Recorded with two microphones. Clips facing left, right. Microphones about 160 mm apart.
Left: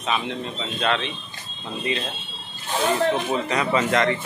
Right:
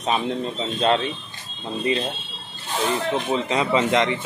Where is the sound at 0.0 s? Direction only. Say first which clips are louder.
Right 3 dB; 35° right (ahead or behind).